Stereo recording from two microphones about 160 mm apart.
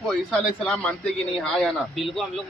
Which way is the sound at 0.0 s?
5° left (ahead or behind).